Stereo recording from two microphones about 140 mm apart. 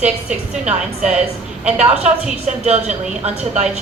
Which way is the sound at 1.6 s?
50° right (ahead or behind).